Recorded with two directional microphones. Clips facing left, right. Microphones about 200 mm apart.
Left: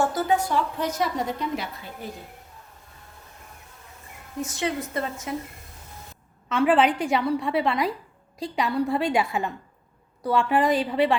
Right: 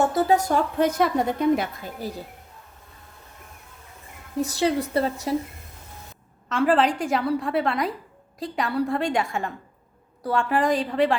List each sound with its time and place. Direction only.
0.0 s a woman's voice: 25° right (ahead or behind)
0.3 s a woman's voice: 45° right (ahead or behind)
4.4 s a woman's voice: 35° right (ahead or behind)
6.5 s a woman's voice: centre (ahead or behind)
10.2 s a woman's voice: centre (ahead or behind)